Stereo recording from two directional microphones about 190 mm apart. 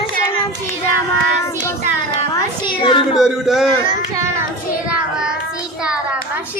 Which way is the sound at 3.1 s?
Centre (ahead or behind).